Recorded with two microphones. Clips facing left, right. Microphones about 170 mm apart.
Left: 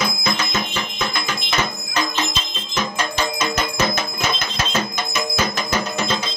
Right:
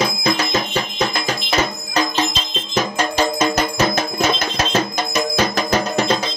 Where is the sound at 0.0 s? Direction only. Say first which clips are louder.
Right 4 dB; 35° right (ahead or behind).